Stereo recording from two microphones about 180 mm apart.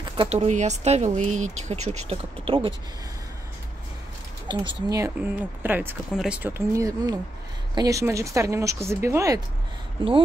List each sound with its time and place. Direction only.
0.2 s speech: 35° right (ahead or behind)
4.5 s speech: 20° right (ahead or behind)
10.0 s speech: 30° right (ahead or behind)